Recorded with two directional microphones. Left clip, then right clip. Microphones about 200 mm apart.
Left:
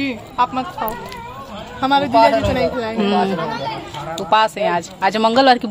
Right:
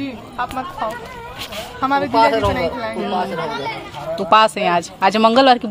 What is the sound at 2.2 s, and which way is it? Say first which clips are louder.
Speech: even; 45° right (ahead or behind).